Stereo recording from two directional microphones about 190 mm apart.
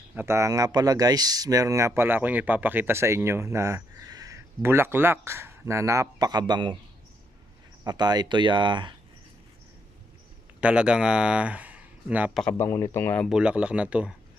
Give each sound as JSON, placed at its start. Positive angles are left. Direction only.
{"t": 0.1, "sound": "speech", "side_deg": -10}
{"t": 7.9, "sound": "speech", "side_deg": -20}
{"t": 10.6, "sound": "speech", "side_deg": -5}
{"t": 12.4, "sound": "speech", "side_deg": 10}